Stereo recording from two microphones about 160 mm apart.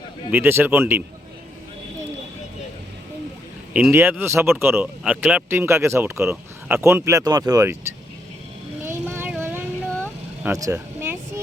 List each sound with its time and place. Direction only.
0.3 s speech: 15° right (ahead or behind)
3.7 s speech: 10° right (ahead or behind)
9.0 s vehicle: 15° right (ahead or behind)
10.4 s a sound: 20° right (ahead or behind)